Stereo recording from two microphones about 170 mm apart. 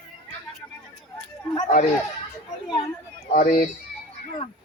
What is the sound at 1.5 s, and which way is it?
Speech, 50° left (ahead or behind).